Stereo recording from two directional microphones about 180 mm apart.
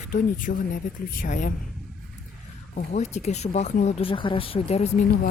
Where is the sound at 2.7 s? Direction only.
40° left (ahead or behind).